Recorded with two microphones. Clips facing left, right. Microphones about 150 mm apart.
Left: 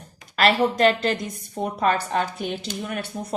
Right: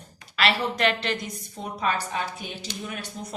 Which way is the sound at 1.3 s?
55° left (ahead or behind).